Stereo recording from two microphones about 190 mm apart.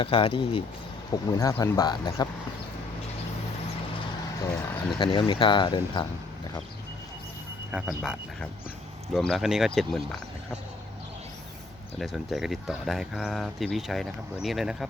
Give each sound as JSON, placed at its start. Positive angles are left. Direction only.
{"t": 0.0, "sound": "speech", "side_deg": 30}
{"t": 4.9, "sound": "speech", "side_deg": 25}
{"t": 7.7, "sound": "speech", "side_deg": -5}
{"t": 11.9, "sound": "speech", "side_deg": 0}